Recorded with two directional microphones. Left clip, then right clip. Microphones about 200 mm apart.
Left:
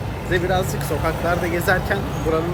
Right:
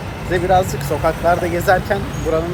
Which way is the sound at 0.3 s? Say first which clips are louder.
Right 6 dB; centre (ahead or behind).